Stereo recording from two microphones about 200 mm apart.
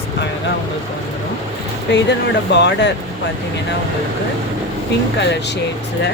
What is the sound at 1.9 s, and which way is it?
Speech, 60° left (ahead or behind).